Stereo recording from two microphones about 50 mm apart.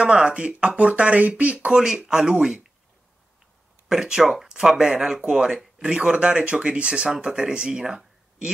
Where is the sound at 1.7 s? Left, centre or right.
Centre.